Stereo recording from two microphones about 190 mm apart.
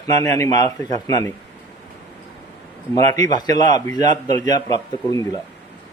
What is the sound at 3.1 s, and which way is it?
Speech, 20° left (ahead or behind).